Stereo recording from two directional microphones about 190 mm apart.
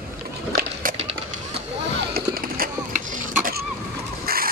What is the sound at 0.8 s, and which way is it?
Run, 35° right (ahead or behind).